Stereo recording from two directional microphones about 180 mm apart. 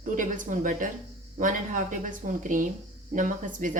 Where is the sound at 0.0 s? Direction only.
45° right (ahead or behind).